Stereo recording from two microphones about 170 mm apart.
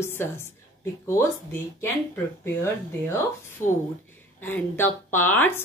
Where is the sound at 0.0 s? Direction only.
15° left (ahead or behind).